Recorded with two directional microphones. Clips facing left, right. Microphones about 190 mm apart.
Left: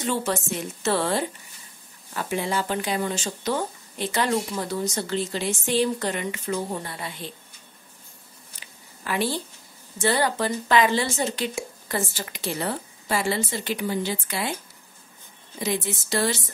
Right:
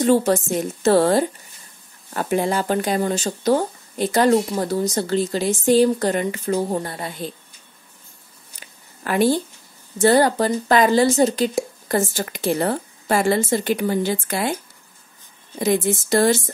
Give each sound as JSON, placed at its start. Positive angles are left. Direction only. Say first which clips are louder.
{"t": 0.0, "sound": "speech", "louder": "right 9 dB", "side_deg": -40}
{"t": 8.5, "sound": "a sound", "louder": "right 5 dB", "side_deg": -50}
{"t": 9.9, "sound": "speech", "louder": "right 8 dB", "side_deg": -40}
{"t": 15.6, "sound": "speech", "louder": "right 8 dB", "side_deg": -50}